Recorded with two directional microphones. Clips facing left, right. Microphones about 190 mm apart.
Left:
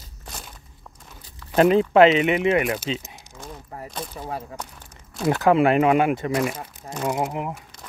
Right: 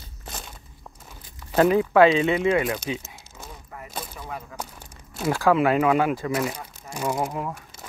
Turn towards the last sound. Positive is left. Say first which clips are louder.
# left 1 dB
turn(degrees=20)  # may be behind; listen again after turning